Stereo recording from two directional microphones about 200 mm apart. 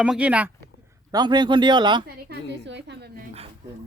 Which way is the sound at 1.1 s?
20° right (ahead or behind).